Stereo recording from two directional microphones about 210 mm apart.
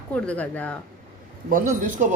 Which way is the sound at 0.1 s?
5° left (ahead or behind).